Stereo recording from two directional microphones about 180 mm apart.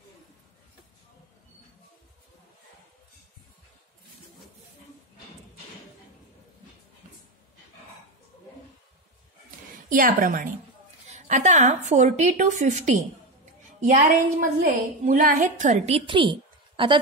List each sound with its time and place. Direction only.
9.8 s a woman's voice: 50° right (ahead or behind)
14.6 s a woman's voice: 50° right (ahead or behind); by 17.0 s 25° right (ahead or behind)